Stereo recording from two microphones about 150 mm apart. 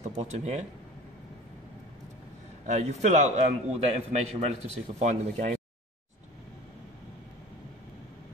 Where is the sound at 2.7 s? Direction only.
50° right (ahead or behind).